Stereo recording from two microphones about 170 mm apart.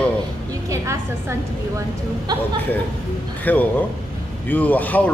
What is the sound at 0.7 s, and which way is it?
A woman's voice, 15° right (ahead or behind).